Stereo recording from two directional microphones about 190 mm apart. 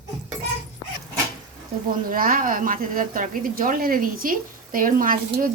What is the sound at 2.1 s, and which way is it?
Speech, 50° right (ahead or behind).